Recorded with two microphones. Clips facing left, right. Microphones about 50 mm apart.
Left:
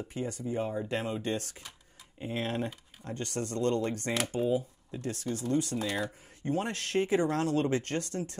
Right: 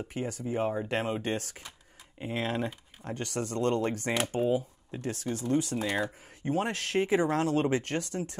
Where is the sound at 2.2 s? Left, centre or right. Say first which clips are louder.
Right 2 dB; right.